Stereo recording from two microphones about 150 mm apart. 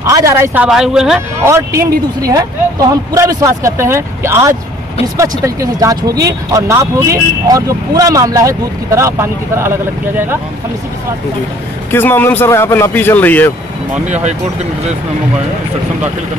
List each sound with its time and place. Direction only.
0.0 s speech: 20° right (ahead or behind)
0.7 s speech: 5° right (ahead or behind)
1.4 s speech: 20° right (ahead or behind)
11.9 s a man's voice: 15° left (ahead or behind)
14.0 s speech: 50° right (ahead or behind)